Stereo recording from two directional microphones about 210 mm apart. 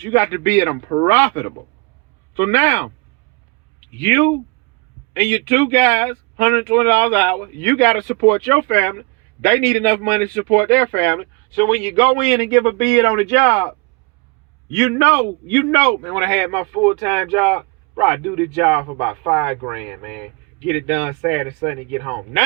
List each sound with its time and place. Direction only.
0.0 s speech: 15° left (ahead or behind)
4.0 s speech: 10° left (ahead or behind)
11.9 s a man's voice: 20° left (ahead or behind); by 21.4 s 5° right (ahead or behind)